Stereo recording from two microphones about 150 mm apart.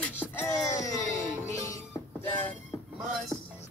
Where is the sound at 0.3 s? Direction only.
15° left (ahead or behind).